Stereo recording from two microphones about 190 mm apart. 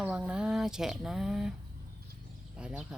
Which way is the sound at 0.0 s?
5° right (ahead or behind).